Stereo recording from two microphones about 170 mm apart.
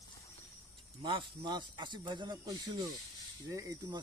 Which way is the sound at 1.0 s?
25° right (ahead or behind).